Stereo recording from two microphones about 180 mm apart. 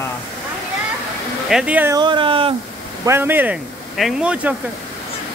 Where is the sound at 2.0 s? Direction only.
25° right (ahead or behind).